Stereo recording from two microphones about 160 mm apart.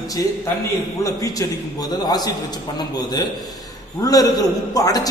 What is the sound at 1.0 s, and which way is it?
A man's voice, 20° left (ahead or behind).